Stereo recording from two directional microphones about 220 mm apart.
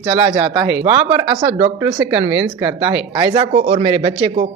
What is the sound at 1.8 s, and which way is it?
Speech, 15° right (ahead or behind).